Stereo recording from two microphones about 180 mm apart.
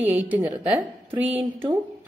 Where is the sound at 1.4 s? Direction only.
30° right (ahead or behind).